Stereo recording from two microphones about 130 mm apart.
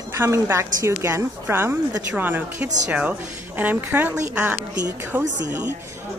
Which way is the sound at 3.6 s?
15° right (ahead or behind).